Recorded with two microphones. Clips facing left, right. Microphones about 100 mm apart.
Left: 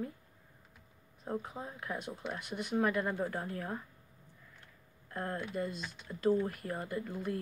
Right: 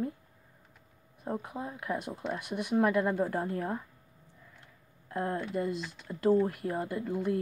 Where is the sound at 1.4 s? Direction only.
10° right (ahead or behind).